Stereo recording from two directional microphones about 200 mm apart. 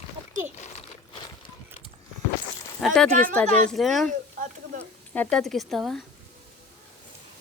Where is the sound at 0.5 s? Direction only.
35° left (ahead or behind).